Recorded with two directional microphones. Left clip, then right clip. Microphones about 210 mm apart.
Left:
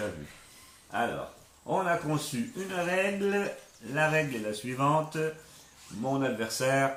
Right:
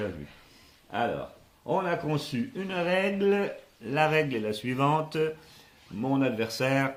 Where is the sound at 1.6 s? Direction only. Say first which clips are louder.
Even; 45° right (ahead or behind).